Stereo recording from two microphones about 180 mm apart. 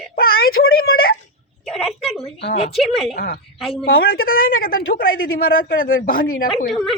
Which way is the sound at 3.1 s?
55° left (ahead or behind).